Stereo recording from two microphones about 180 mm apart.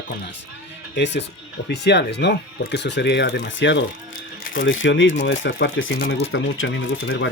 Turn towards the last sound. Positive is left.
turn(degrees=80)